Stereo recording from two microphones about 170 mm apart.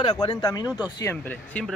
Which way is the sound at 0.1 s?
25° left (ahead or behind).